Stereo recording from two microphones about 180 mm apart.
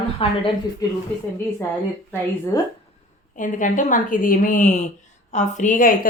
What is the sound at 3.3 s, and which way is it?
A woman's voice, 45° left (ahead or behind).